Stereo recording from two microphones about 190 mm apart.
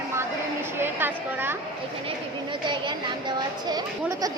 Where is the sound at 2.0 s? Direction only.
25° right (ahead or behind).